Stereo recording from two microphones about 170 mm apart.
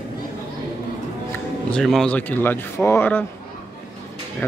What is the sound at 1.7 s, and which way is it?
Speech, 5° left (ahead or behind).